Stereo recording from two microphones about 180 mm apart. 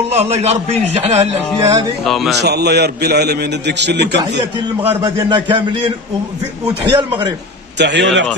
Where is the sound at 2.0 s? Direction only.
Centre (ahead or behind).